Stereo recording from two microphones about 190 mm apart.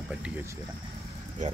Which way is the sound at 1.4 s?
40° right (ahead or behind).